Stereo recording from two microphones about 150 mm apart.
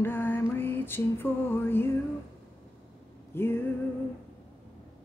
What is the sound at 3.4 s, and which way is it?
Music, 15° left (ahead or behind).